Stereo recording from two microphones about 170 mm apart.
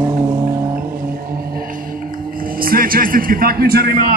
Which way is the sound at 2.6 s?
55° right (ahead or behind).